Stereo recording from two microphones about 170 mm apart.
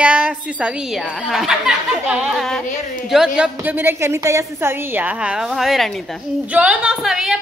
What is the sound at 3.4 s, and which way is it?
A woman's voice, 10° right (ahead or behind).